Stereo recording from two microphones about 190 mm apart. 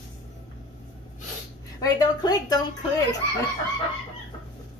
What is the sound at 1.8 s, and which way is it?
Speech, 20° left (ahead or behind).